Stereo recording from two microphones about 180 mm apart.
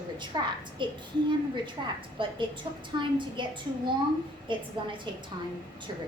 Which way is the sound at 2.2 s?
25° right (ahead or behind).